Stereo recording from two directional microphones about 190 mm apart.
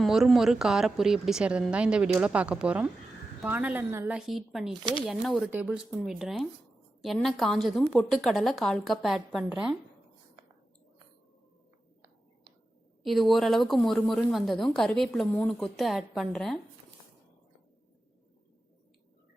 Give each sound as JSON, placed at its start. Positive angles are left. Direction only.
{"t": 0.0, "sound": "a woman's voice", "side_deg": 0}
{"t": 13.1, "sound": "a woman's voice", "side_deg": 0}